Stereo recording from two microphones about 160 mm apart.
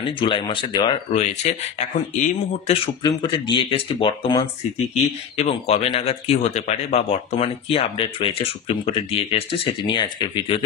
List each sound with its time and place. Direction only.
0.0 s speech: 30° left (ahead or behind); by 2.7 s 50° left (ahead or behind)
2.7 s speech: 30° left (ahead or behind)